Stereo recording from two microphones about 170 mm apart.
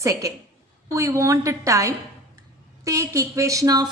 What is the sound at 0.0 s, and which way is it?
Speech, 20° right (ahead or behind).